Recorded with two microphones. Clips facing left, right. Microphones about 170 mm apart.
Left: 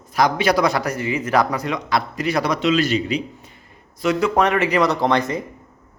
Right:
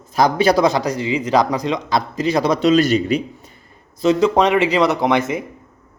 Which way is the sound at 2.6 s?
40° right (ahead or behind).